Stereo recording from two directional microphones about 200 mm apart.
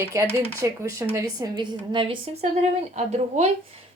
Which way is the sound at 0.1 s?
15° right (ahead or behind).